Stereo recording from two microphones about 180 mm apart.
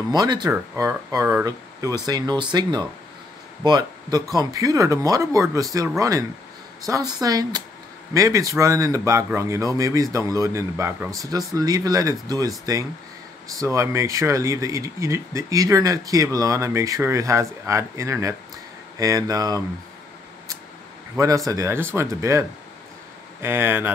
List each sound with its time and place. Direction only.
0.1 s speech: 20° right (ahead or behind)
21.2 s speech: 20° right (ahead or behind)